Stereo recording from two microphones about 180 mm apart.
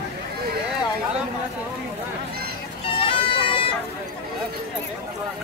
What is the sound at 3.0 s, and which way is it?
Music, 30° left (ahead or behind).